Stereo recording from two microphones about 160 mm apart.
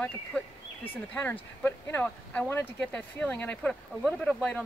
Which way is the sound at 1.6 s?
15° left (ahead or behind).